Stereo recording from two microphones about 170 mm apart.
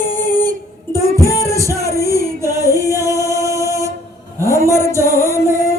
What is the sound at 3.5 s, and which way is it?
Music, 20° left (ahead or behind).